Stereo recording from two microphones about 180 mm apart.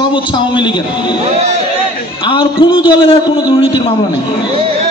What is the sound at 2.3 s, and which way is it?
Speech, 30° left (ahead or behind).